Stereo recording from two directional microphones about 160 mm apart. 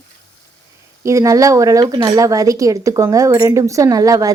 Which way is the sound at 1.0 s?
20° right (ahead or behind).